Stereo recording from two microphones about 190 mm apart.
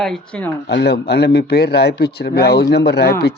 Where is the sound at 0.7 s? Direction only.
60° left (ahead or behind).